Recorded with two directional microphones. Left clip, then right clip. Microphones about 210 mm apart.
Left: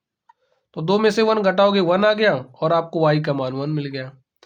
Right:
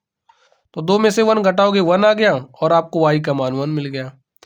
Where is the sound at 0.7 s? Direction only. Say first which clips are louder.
Right 3 dB; 40° right (ahead or behind).